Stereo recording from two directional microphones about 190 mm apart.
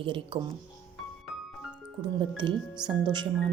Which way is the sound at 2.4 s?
25° right (ahead or behind).